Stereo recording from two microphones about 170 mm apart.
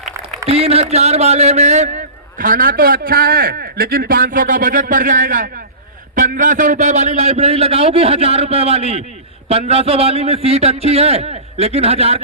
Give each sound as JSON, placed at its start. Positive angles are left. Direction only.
{"t": 0.4, "sound": "a man's voice", "side_deg": -35}